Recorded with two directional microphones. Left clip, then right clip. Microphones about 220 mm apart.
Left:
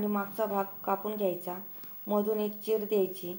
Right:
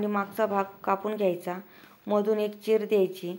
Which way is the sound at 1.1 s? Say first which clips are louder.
Right 5 dB; 20° right (ahead or behind).